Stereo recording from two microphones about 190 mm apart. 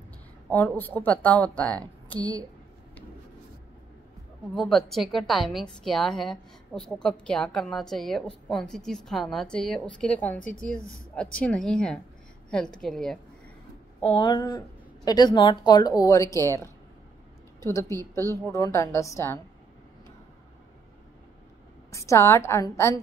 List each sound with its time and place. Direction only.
0.5 s a woman's voice: 10° left (ahead or behind)
4.6 s a woman's voice: centre (ahead or behind)
14.0 s a woman's voice: 25° left (ahead or behind)
17.6 s a woman's voice: 15° left (ahead or behind)
21.9 s a woman's voice: 15° left (ahead or behind)